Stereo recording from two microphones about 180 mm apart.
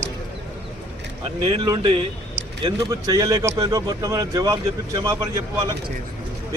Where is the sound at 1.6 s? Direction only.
25° right (ahead or behind).